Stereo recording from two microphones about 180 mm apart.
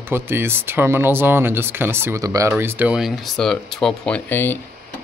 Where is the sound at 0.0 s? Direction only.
10° right (ahead or behind).